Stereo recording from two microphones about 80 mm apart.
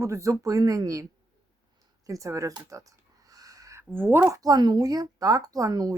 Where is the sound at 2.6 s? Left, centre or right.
Right.